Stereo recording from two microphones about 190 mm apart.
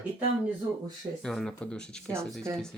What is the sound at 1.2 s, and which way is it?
Speech, centre (ahead or behind).